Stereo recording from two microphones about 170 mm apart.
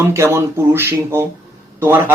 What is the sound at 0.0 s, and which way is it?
Speech, 15° right (ahead or behind).